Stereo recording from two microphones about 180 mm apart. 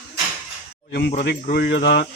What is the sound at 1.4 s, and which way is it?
Speech, 60° left (ahead or behind).